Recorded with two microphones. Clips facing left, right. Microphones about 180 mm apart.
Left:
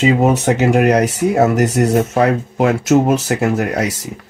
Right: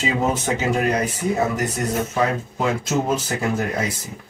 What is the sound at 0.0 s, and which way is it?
Speech, 70° left (ahead or behind).